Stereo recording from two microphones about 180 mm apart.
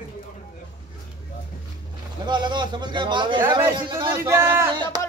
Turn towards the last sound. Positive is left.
turn(degrees=-20)  # may be behind; listen again after turning